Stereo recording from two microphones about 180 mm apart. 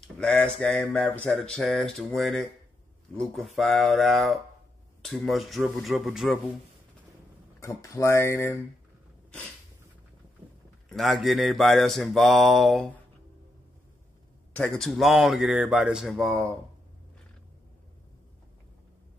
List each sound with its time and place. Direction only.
0.0 s mantra: 5° left (ahead or behind)
7.6 s speech: 15° left (ahead or behind)
10.9 s mantra: centre (ahead or behind)
14.5 s mantra: 5° left (ahead or behind)